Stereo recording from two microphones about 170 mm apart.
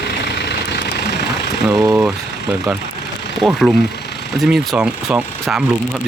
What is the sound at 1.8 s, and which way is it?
Speech, 10° right (ahead or behind).